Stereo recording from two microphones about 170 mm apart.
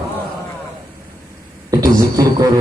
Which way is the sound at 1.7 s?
20° right (ahead or behind).